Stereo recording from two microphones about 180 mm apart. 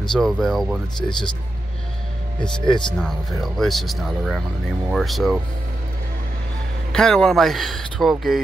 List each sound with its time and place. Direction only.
0.1 s speech: centre (ahead or behind)
0.9 s speech: 25° left (ahead or behind)
2.7 s speech: centre (ahead or behind)
6.9 s speech: 5° left (ahead or behind)